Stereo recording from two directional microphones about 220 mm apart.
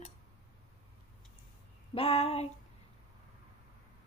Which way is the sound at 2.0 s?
25° left (ahead or behind).